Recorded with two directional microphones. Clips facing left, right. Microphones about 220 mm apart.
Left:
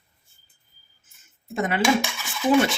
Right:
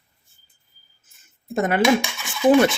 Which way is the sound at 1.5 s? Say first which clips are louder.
Right 4 dB; 45° right (ahead or behind).